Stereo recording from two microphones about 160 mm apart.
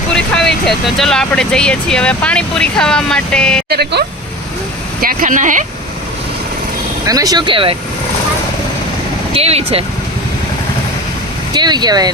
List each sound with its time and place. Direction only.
0.1 s speech: 5° left (ahead or behind)
3.7 s speech: 90° right
4.9 s speech: 60° right (ahead or behind)
7.0 s speech: 20° right (ahead or behind)
9.3 s speech: 40° right (ahead or behind)
11.5 s speech: 25° right (ahead or behind)